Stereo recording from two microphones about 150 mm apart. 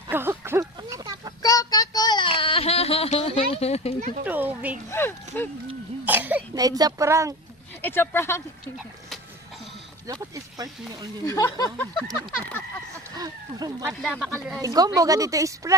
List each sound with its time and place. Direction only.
0.1 s a sound: 15° right (ahead or behind)
1.4 s child singing: 25° left (ahead or behind); by 3.9 s 45° left (ahead or behind)
4.2 s speech: 10° right (ahead or behind)
4.9 s speech: 15° left (ahead or behind)
6.1 s throat clearing: 10° right (ahead or behind)
6.5 s speech: 25° right (ahead or behind)
7.8 s speech: 15° left (ahead or behind)
10.1 s speech: 25° right (ahead or behind)
11.3 s speech: 25° left (ahead or behind)
12.2 s a sound: 10° left (ahead or behind)
13.1 s speech: 25° right (ahead or behind)
14.0 s speech: 5° right (ahead or behind)
14.6 s speech: 25° right (ahead or behind)